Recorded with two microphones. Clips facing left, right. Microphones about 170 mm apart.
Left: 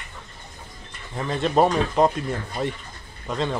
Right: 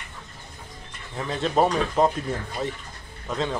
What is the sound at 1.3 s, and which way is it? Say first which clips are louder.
Speech: left 2 dB; centre (ahead or behind).